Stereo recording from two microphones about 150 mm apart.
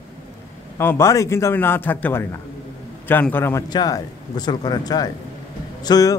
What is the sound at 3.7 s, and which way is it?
A man's voice, 25° left (ahead or behind).